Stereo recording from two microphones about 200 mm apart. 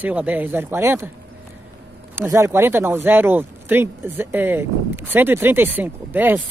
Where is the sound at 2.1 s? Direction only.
10° right (ahead or behind).